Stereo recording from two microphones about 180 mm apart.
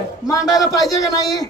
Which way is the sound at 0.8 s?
20° left (ahead or behind).